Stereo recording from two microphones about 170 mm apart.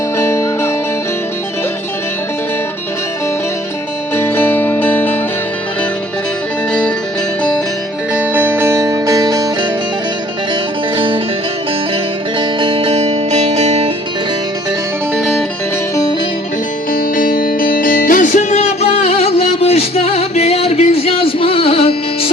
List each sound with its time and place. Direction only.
0.2 s music: 15° left (ahead or behind)
4.1 s music: 15° left (ahead or behind)
8.1 s music: 10° right (ahead or behind)
10.9 s music: 30° right (ahead or behind)
12.4 s music: 30° right (ahead or behind)
16.9 s music: 55° left (ahead or behind); by 22.3 s 35° left (ahead or behind)